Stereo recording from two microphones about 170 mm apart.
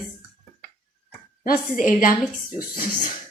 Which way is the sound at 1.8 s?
50° left (ahead or behind).